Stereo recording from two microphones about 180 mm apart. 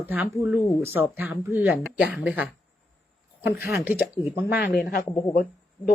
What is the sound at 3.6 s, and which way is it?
Speech, 60° left (ahead or behind).